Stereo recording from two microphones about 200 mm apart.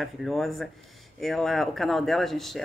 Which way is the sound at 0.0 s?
Centre (ahead or behind).